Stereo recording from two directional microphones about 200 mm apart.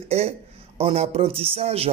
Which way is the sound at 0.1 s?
30° right (ahead or behind).